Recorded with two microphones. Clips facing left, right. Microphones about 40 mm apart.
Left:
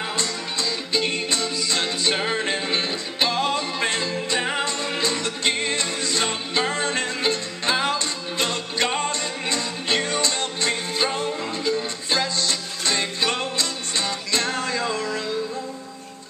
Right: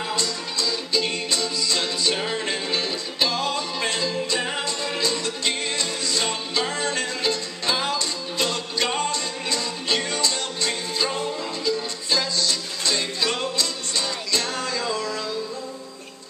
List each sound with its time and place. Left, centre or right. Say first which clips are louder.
0.0 s music: even; left